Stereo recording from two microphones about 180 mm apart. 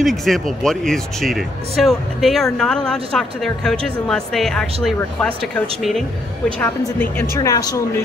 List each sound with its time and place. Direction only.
0.0 s speech: centre (ahead or behind)
6.6 s a woman's voice: 10° left (ahead or behind)